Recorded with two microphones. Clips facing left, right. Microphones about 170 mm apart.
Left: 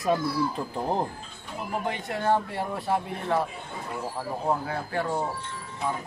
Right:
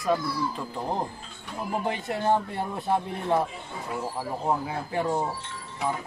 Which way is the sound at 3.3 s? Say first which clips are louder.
Right 2 dB; 25° right (ahead or behind).